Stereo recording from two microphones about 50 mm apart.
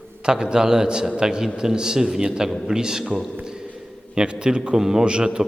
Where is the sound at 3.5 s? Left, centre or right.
Centre.